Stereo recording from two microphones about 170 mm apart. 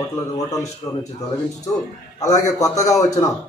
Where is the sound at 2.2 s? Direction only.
20° left (ahead or behind).